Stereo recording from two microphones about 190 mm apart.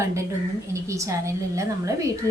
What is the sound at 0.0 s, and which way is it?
Speech, 15° right (ahead or behind).